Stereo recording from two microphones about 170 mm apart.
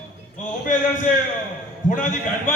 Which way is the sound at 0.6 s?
50° left (ahead or behind).